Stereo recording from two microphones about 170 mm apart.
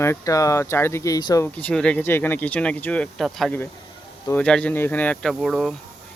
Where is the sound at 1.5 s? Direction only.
5° left (ahead or behind).